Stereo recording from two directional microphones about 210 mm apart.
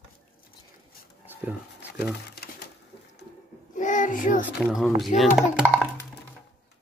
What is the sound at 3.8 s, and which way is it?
Child singing, 35° left (ahead or behind).